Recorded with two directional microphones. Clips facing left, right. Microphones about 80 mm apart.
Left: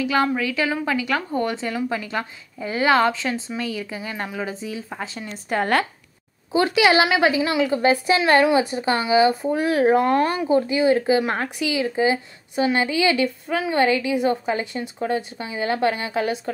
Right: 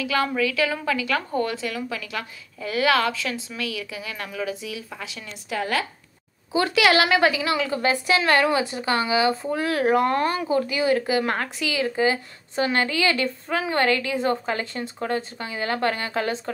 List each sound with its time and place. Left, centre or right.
0.0 s a woman's voice: left
5.5 s speech: left
6.5 s a woman's voice: left